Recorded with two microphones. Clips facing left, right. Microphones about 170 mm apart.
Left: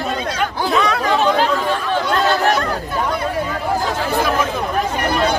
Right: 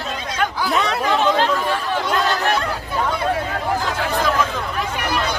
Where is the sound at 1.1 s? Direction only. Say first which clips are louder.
Even; 15° left (ahead or behind).